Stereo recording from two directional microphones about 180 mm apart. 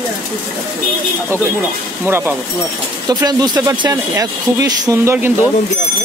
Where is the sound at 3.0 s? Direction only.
20° right (ahead or behind).